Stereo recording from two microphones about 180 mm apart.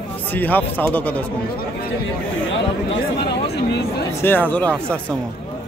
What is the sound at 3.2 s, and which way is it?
Chatter, 70° left (ahead or behind).